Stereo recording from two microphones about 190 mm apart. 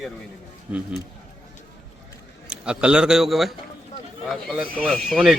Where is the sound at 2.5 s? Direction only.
5° right (ahead or behind).